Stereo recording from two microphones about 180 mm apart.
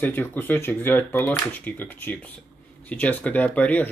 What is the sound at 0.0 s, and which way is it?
Speech, 10° left (ahead or behind).